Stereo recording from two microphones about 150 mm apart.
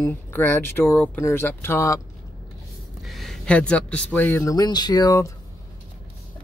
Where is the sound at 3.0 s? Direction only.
Centre (ahead or behind); by 5.3 s 25° left (ahead or behind).